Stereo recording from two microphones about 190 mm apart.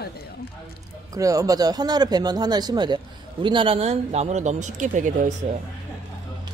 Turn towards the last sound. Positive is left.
turn(degrees=-40)  # may be behind; listen again after turning